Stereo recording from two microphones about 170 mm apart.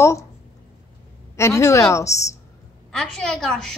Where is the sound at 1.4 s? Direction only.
15° left (ahead or behind).